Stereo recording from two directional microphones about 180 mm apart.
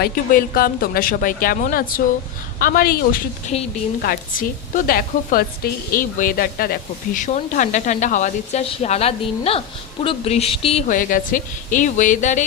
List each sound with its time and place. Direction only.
0.0 s speech: 55° left (ahead or behind)